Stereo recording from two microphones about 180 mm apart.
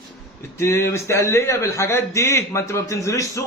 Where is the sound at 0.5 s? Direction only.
15° left (ahead or behind).